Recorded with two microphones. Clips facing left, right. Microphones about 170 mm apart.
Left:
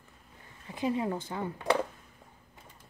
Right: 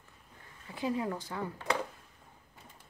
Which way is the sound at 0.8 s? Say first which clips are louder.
Left 3 dB; 20° left (ahead or behind).